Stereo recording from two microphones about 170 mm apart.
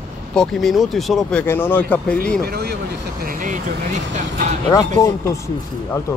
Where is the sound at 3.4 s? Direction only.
45° right (ahead or behind).